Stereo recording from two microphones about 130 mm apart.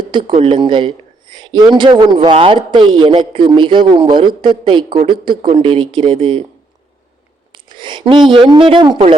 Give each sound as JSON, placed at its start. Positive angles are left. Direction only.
{"t": 0.1, "sound": "speech", "side_deg": -40}
{"t": 7.5, "sound": "speech", "side_deg": -40}